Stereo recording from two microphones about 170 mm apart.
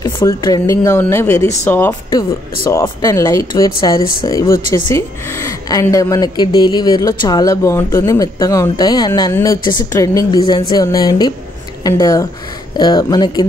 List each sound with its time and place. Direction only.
0.0 s a woman's voice: 25° left (ahead or behind)